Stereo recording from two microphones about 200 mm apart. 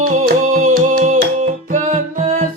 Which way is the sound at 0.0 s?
40° right (ahead or behind).